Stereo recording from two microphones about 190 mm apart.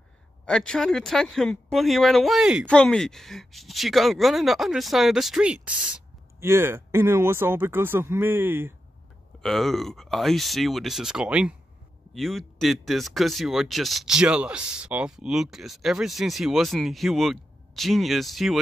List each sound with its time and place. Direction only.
0.5 s speech: 5° left (ahead or behind)
9.4 s speech: centre (ahead or behind)